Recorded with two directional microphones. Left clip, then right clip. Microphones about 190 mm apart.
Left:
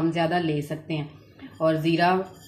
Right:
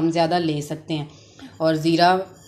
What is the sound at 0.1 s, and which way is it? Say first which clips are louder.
Speech: right 4 dB; 30° right (ahead or behind).